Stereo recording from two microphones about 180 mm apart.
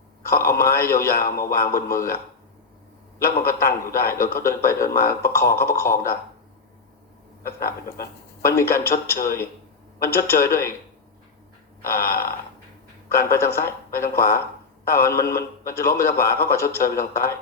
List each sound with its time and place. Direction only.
0.3 s a man's voice: 15° left (ahead or behind)
3.4 s a man's voice: 15° left (ahead or behind)
8.4 s a man's voice: 15° left (ahead or behind)
11.8 s a man's voice: 15° left (ahead or behind)
13.3 s a man's voice: 15° left (ahead or behind)